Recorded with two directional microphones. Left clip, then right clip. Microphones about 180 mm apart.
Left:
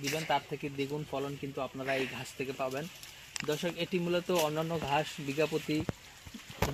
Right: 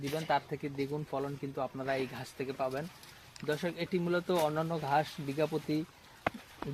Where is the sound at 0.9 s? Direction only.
10° left (ahead or behind).